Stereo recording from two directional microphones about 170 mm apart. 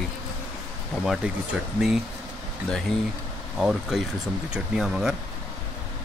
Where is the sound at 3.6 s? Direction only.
Centre (ahead or behind).